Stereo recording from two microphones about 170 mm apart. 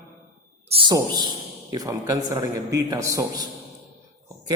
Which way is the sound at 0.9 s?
25° right (ahead or behind).